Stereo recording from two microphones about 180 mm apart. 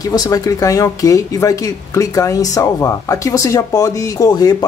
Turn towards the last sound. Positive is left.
turn(degrees=20)  # may be behind; listen again after turning